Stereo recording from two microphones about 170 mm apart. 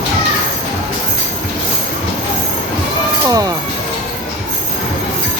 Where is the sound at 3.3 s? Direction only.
20° right (ahead or behind).